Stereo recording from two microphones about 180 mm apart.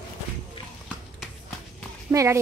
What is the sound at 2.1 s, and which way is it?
Speech, 15° right (ahead or behind).